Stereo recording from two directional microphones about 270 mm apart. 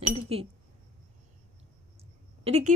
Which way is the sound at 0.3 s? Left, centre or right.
Right.